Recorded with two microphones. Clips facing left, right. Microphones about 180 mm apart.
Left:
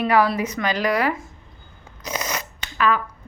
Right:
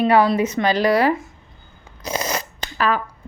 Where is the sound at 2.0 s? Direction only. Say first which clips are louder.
Right 4 dB; 30° right (ahead or behind).